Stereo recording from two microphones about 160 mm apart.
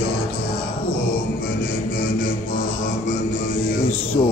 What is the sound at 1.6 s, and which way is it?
Music, 60° left (ahead or behind).